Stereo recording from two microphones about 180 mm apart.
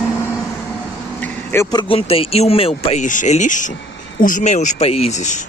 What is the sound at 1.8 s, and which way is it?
Speech, 30° left (ahead or behind).